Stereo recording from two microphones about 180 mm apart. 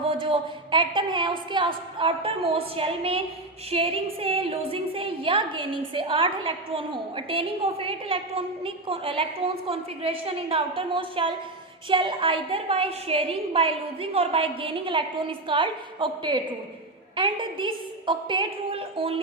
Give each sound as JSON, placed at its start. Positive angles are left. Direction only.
{"t": 0.1, "sound": "a woman's voice", "side_deg": -30}